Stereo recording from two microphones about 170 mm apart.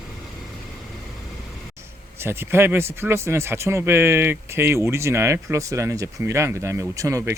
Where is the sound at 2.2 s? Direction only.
15° right (ahead or behind).